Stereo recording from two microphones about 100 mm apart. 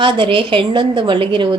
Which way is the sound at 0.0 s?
60° right (ahead or behind).